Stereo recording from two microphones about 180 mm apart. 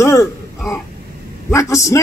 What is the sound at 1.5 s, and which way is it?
Speech, 15° left (ahead or behind).